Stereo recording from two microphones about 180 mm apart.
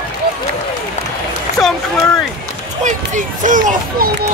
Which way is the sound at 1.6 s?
Centre (ahead or behind).